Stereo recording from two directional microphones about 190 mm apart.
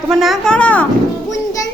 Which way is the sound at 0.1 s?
Centre (ahead or behind).